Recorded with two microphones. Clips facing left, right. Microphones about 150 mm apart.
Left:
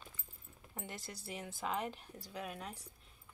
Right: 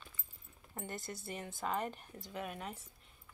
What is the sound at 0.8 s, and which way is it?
Speech, centre (ahead or behind).